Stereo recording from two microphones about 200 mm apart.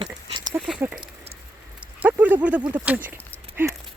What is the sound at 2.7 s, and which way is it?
Speech, 10° right (ahead or behind).